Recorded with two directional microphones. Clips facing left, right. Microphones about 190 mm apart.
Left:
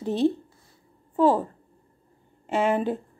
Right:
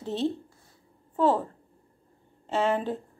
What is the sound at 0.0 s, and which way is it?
A woman's voice, 15° left (ahead or behind).